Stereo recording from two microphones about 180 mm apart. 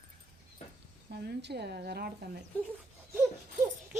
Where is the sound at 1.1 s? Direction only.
65° right (ahead or behind).